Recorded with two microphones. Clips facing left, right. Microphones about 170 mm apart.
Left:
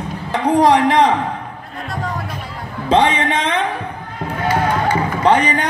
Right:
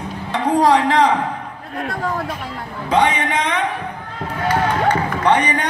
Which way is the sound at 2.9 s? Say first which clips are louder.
Left 2 dB; 30° left (ahead or behind).